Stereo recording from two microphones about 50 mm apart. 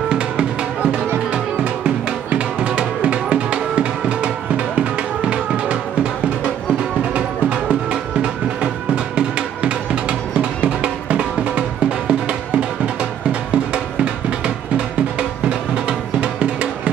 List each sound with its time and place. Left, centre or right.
2.2 s music: right
7.2 s music: right
16.2 s music: right